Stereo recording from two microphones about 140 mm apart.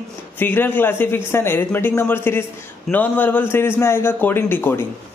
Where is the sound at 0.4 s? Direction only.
15° left (ahead or behind).